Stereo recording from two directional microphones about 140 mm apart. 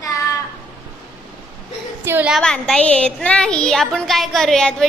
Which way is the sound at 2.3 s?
5° left (ahead or behind).